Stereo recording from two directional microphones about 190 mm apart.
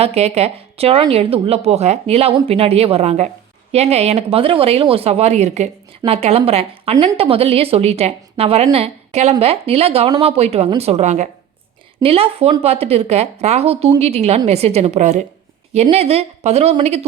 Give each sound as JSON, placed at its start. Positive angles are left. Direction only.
{"t": 0.0, "sound": "a woman's voice", "side_deg": -35}